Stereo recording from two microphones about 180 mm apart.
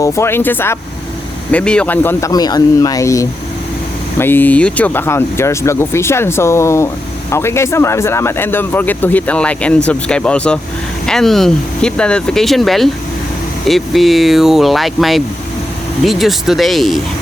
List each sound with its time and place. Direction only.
0.0 s speech: 15° left (ahead or behind)